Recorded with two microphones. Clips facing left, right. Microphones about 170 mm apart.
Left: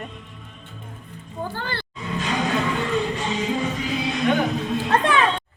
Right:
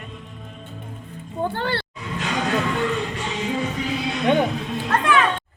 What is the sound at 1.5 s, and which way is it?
Speech, 70° right (ahead or behind).